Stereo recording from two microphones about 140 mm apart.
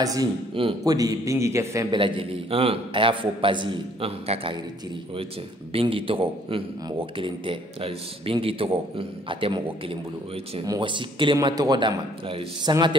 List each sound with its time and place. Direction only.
0.0 s a man's voice: 25° right (ahead or behind)
2.0 s a man's voice: 40° right (ahead or behind)
5.7 s a man's voice: 40° right (ahead or behind)